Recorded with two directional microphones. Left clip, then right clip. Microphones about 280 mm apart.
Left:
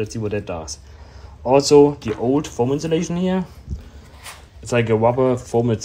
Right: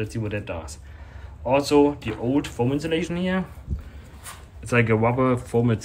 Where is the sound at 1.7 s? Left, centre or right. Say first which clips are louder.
Left 7 dB; centre.